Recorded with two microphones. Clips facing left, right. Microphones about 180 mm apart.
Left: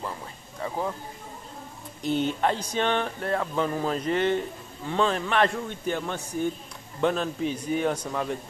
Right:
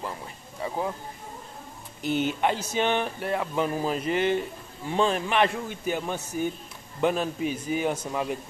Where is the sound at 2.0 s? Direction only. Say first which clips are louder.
Even; 30° left (ahead or behind).